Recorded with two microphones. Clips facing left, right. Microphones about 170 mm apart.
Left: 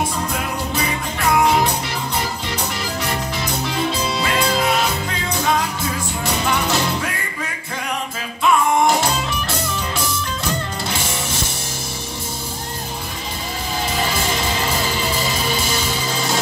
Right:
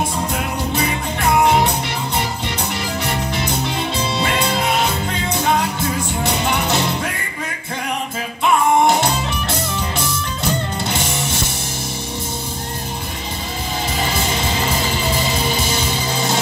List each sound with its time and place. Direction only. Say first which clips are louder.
1.4 s music: right 2 dB; 25° right (ahead or behind)
3.4 s music: even; 25° right (ahead or behind)
6.2 s music: even; 20° right (ahead or behind)